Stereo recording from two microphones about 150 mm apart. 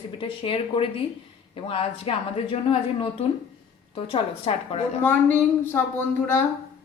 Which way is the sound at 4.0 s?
40° left (ahead or behind).